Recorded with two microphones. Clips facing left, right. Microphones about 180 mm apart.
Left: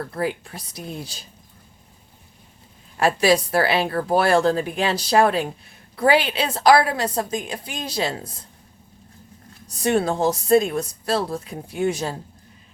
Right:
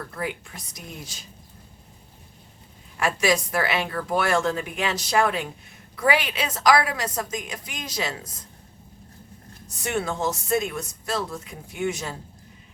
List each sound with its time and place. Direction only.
0.0 s a woman's voice: 35° left (ahead or behind)
3.0 s a woman's voice: 35° left (ahead or behind)
9.6 s a woman's voice: 35° left (ahead or behind)